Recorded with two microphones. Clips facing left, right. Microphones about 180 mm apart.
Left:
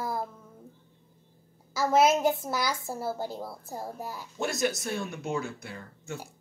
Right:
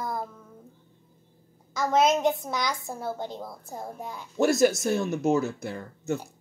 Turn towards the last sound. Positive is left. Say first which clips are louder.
# right 9 dB
turn(degrees=-45)  # may be behind; listen again after turning